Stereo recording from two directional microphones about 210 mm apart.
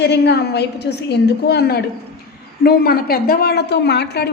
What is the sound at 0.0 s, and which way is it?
A woman's voice, 55° left (ahead or behind).